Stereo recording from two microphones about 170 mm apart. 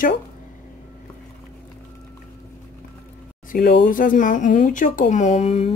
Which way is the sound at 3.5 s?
55° left (ahead or behind).